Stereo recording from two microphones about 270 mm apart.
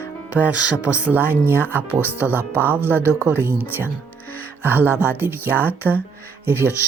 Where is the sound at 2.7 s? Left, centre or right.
Centre.